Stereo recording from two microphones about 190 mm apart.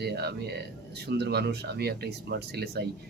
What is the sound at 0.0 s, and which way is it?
Speech, 60° right (ahead or behind).